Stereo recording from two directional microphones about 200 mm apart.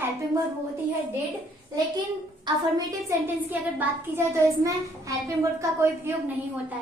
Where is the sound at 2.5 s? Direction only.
20° right (ahead or behind).